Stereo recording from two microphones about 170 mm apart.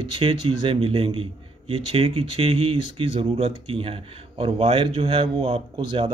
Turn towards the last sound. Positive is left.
turn(degrees=-30)  # may be behind; listen again after turning